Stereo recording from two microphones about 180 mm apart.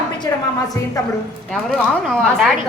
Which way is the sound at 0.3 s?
15° left (ahead or behind).